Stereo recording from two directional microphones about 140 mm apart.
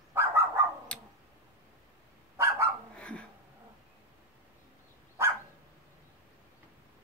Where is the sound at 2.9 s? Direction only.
10° left (ahead or behind).